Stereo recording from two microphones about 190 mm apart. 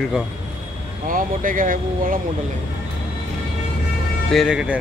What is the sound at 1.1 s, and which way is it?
Speech, 45° right (ahead or behind).